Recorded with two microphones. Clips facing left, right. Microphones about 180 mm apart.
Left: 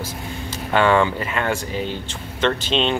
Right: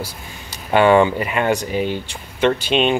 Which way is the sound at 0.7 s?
15° right (ahead or behind).